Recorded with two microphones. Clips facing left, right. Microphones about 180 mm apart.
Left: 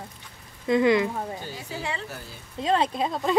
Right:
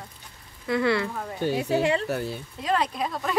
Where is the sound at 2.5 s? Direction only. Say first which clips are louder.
Left 3 dB; 25° left (ahead or behind).